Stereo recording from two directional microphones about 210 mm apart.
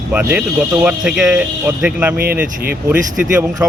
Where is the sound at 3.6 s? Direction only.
10° right (ahead or behind).